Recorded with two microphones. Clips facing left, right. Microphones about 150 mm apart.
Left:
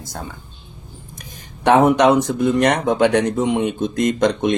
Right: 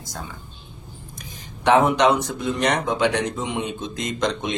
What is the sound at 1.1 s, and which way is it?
Speech, 50° left (ahead or behind).